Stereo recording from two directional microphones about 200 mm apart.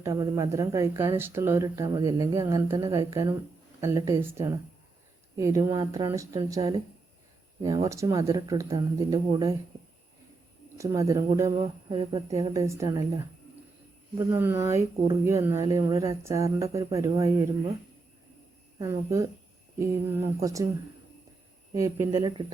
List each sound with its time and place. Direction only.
0.0 s speech: 15° right (ahead or behind)
10.8 s speech: 15° right (ahead or behind)
11.5 s a woman's voice: 30° right (ahead or behind)
14.2 s speech: 10° right (ahead or behind)
18.8 s speech: 15° right (ahead or behind)
21.7 s speech: 15° right (ahead or behind)